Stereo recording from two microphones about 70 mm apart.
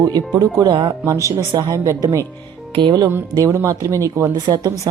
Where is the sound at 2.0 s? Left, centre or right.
Right.